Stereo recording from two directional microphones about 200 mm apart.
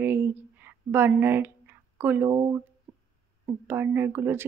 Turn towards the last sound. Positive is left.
turn(degrees=-10)  # may be behind; listen again after turning